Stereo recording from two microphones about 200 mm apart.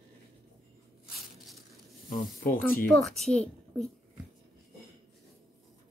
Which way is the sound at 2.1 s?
45° left (ahead or behind).